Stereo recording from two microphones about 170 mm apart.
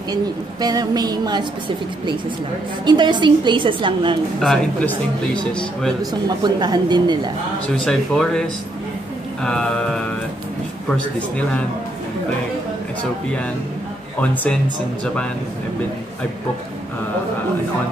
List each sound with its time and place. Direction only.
0.1 s a woman's voice: 25° right (ahead or behind)
2.8 s a woman's voice: 25° right (ahead or behind)
4.4 s speech: 5° left (ahead or behind)
6.2 s a woman's voice: 25° right (ahead or behind)
7.8 s speech: 5° left (ahead or behind)